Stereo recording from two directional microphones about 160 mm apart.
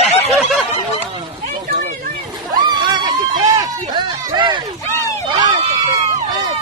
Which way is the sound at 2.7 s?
25° right (ahead or behind).